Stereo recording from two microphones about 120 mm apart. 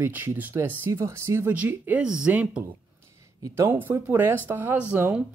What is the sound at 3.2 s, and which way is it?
Speech, 25° right (ahead or behind).